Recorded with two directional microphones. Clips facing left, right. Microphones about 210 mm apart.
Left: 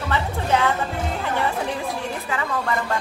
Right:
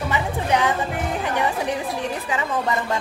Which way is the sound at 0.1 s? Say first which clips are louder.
Left 1 dB; 15° right (ahead or behind).